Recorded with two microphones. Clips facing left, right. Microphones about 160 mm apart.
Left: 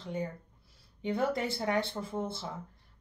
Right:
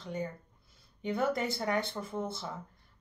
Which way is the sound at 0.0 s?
30° left (ahead or behind).